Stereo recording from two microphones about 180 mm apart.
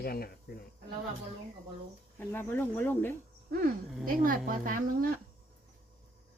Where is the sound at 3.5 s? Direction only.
55° right (ahead or behind).